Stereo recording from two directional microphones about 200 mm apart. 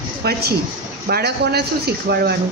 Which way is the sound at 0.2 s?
50° right (ahead or behind).